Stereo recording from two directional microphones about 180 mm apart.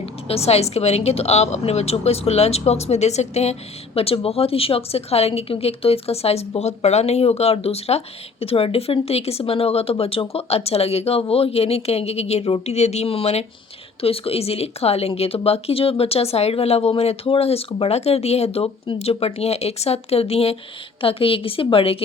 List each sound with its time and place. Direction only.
0.0 s a woman's voice: 35° left (ahead or behind)